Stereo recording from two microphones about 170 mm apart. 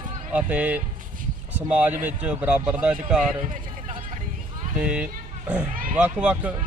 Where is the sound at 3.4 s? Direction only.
50° right (ahead or behind).